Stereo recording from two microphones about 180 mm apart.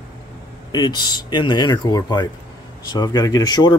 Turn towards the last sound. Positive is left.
turn(degrees=20)  # may be behind; listen again after turning